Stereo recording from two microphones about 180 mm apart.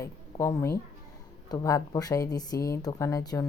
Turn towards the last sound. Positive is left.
turn(degrees=20)  # may be behind; listen again after turning